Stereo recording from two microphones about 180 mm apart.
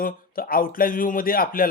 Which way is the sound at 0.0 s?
55° left (ahead or behind).